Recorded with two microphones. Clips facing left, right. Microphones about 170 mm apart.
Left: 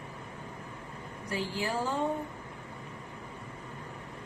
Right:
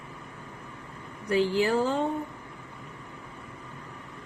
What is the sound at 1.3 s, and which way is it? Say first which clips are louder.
Speech: right 10 dB; 65° right (ahead or behind).